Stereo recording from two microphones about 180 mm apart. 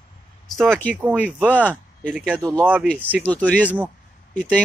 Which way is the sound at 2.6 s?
10° right (ahead or behind).